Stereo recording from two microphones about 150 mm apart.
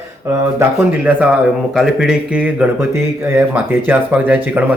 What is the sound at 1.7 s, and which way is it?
Speech, 5° right (ahead or behind).